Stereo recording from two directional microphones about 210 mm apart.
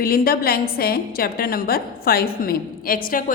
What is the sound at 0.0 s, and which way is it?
A woman's voice, 45° left (ahead or behind).